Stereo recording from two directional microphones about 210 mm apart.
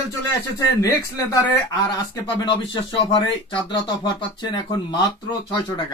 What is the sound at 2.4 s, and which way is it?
Speech, 20° left (ahead or behind).